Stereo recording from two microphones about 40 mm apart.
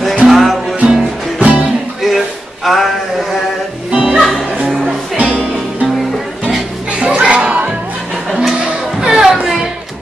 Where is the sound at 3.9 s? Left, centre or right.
Right.